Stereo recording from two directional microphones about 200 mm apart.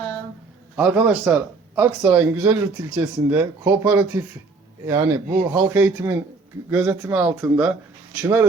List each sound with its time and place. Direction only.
0.8 s speech: 5° right (ahead or behind)